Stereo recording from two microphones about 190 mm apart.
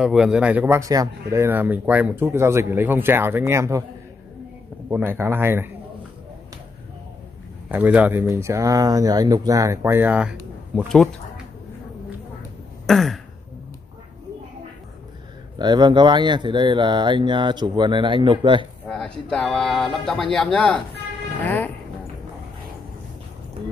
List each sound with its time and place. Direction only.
0.0 s speech: 5° right (ahead or behind)
4.8 s speech: 10° right (ahead or behind)
7.7 s speech: 10° right (ahead or behind)
10.7 s speech: 5° left (ahead or behind)
12.8 s throat clearing: centre (ahead or behind)
15.5 s speech: 25° right (ahead or behind)
18.9 s speech: 5° left (ahead or behind)